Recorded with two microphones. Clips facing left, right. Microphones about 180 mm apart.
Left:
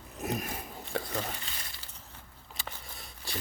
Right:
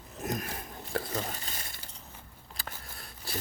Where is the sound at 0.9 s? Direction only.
Centre (ahead or behind).